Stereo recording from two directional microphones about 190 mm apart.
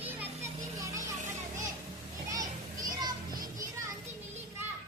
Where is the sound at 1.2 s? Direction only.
40° right (ahead or behind).